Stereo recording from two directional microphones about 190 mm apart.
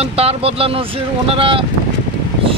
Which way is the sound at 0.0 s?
30° right (ahead or behind).